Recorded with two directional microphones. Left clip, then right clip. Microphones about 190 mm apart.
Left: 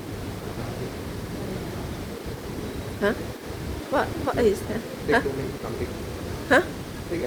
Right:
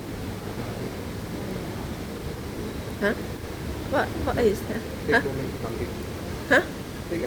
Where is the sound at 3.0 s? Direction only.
20° left (ahead or behind).